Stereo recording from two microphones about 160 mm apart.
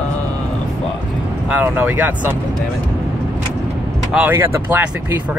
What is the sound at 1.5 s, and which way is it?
Speech, 10° right (ahead or behind).